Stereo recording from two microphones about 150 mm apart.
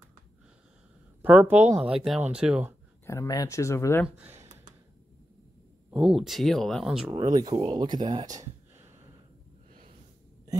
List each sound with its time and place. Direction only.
1.2 s speech: 10° right (ahead or behind)
3.1 s speech: 20° left (ahead or behind)
4.2 s a sound: 15° right (ahead or behind)
5.9 s speech: 5° right (ahead or behind)
7.3 s speech: 35° right (ahead or behind)